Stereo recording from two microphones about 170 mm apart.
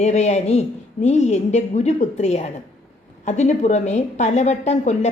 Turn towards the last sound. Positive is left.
turn(degrees=40)  # may be behind; listen again after turning